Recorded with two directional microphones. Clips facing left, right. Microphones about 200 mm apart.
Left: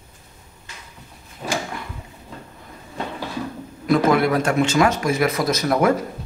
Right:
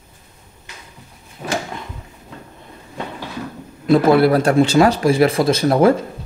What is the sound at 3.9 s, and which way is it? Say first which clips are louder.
Speech: right 5 dB; 35° right (ahead or behind).